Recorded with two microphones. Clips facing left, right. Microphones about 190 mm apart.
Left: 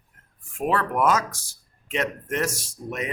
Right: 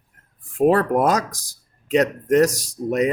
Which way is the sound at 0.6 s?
40° right (ahead or behind).